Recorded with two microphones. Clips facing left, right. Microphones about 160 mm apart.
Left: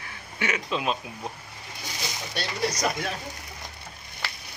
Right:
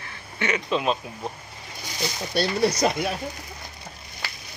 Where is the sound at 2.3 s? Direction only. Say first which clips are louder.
Right 7 dB; 30° right (ahead or behind).